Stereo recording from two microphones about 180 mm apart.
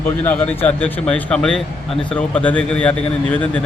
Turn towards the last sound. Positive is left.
turn(degrees=10)  # may be behind; listen again after turning